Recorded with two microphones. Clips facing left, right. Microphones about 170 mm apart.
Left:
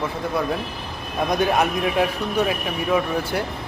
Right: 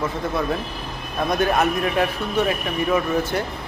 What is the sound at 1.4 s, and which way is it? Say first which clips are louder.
Speech: right 1 dB; 10° left (ahead or behind).